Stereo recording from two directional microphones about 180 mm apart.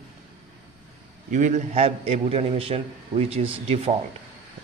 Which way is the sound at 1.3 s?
40° right (ahead or behind).